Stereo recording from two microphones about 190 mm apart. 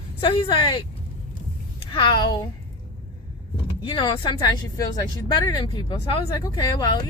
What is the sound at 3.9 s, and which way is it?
Speech, 25° left (ahead or behind).